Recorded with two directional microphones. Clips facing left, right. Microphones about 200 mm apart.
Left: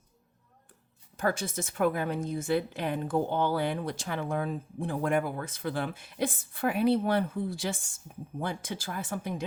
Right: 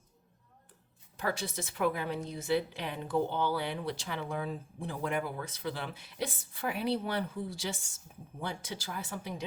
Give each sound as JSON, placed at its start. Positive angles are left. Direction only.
{"t": 1.1, "sound": "a woman's voice", "side_deg": 45}